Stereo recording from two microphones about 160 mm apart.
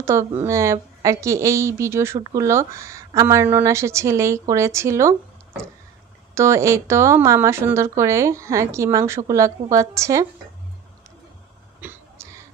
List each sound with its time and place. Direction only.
0.0 s a woman's voice: 20° right (ahead or behind)
6.3 s speech: 20° right (ahead or behind)
11.8 s throat clearing: 15° right (ahead or behind)